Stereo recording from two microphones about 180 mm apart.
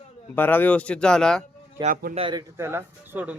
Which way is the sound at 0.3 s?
10° left (ahead or behind).